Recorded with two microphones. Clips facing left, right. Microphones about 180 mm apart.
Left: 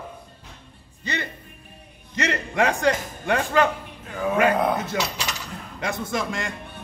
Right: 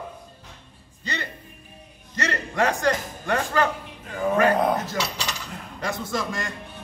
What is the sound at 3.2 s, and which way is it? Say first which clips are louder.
Speech: left 3 dB; 20° left (ahead or behind).